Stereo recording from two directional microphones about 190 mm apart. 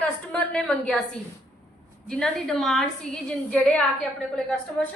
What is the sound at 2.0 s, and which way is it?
A woman's voice, 5° left (ahead or behind).